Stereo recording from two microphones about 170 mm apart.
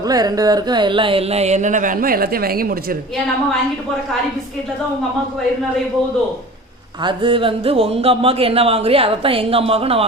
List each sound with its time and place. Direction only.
0.0 s speech: 20° right (ahead or behind); by 3.0 s 60° right (ahead or behind)
7.0 s speech: 30° right (ahead or behind)